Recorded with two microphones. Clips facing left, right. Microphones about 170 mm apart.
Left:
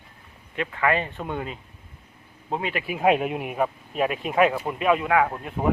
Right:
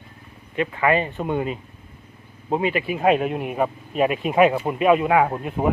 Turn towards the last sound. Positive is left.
turn(degrees=-15)  # may be behind; listen again after turning